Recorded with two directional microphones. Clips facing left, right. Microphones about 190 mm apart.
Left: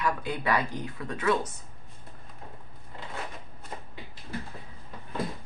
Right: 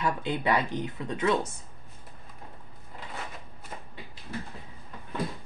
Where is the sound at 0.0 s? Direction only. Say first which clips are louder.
Right 1 dB; 25° right (ahead or behind).